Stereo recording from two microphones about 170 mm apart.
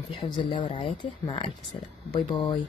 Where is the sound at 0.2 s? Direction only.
30° left (ahead or behind).